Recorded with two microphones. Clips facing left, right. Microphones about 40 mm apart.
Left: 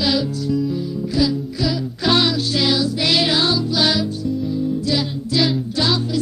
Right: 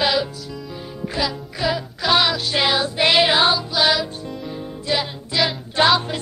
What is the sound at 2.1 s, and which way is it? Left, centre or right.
Music, centre.